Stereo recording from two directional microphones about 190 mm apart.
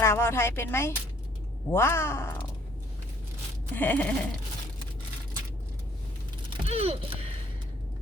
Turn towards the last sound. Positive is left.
turn(degrees=-30)  # may be behind; listen again after turning